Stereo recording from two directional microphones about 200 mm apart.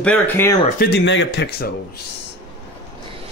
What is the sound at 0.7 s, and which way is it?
Speech, 55° left (ahead or behind).